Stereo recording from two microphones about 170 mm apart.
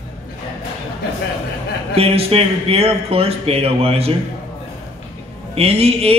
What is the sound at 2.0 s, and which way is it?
A man's voice, 35° right (ahead or behind).